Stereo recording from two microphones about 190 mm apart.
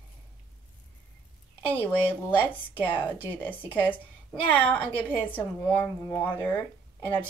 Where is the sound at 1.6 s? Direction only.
10° left (ahead or behind).